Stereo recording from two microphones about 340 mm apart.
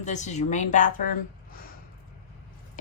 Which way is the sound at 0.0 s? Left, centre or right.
Left.